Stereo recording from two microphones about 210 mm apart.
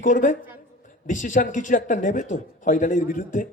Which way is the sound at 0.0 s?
40° left (ahead or behind).